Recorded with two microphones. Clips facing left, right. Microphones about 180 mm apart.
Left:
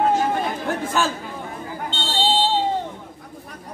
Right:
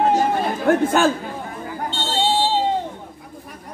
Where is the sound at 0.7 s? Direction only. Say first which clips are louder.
Right 10 dB; 55° right (ahead or behind).